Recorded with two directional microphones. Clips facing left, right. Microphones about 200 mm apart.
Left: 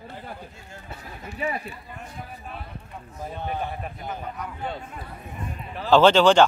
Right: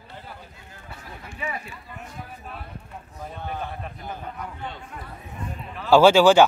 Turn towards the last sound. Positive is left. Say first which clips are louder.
# right 2 dB
turn(degrees=-10)  # may be behind; listen again after turning